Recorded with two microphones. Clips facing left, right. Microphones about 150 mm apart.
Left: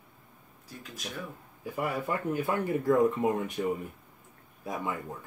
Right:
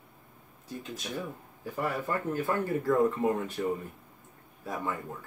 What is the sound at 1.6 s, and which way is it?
Speech, 15° left (ahead or behind).